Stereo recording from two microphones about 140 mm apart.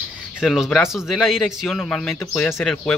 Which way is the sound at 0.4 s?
5° right (ahead or behind).